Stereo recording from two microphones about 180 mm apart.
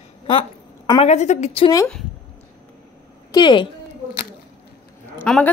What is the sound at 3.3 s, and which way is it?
Speech, 25° left (ahead or behind).